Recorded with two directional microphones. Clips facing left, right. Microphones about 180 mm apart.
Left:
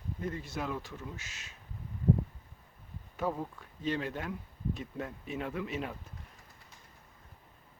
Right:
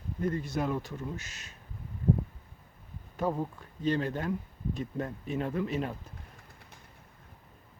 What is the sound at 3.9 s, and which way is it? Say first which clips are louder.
Speech: right 5 dB; 40° right (ahead or behind).